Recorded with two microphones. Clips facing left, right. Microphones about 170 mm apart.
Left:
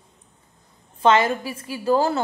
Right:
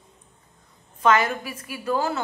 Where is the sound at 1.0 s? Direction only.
25° left (ahead or behind).